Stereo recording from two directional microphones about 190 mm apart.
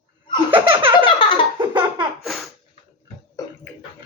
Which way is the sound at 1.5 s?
25° right (ahead or behind).